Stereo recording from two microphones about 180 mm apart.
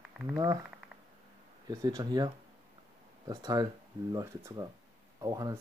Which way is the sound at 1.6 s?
20° right (ahead or behind).